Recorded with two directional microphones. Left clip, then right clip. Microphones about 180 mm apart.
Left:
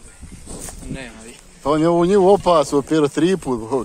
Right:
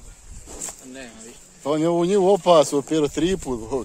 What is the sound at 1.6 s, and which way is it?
Speech, centre (ahead or behind).